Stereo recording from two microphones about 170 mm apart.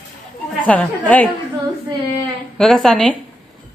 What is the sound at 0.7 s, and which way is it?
Speech, 10° left (ahead or behind).